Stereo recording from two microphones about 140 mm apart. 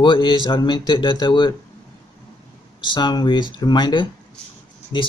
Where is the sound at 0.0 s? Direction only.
35° left (ahead or behind).